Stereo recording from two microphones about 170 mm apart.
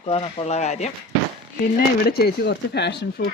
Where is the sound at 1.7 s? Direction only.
70° left (ahead or behind); by 3.3 s 85° left.